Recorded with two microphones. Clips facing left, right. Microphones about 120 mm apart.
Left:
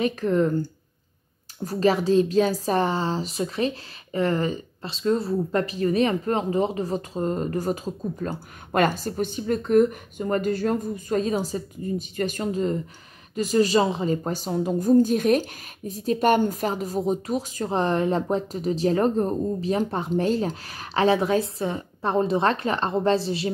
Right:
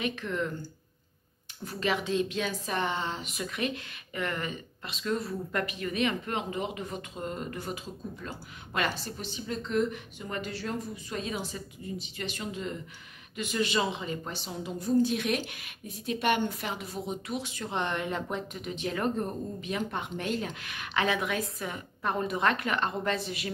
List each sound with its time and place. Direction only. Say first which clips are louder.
0.0 s speech: left 10 dB; 40° left (ahead or behind)